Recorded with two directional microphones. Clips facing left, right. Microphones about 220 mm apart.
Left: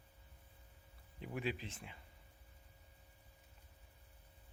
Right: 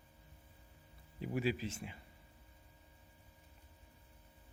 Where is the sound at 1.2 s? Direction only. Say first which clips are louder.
Right 5 dB; 5° right (ahead or behind).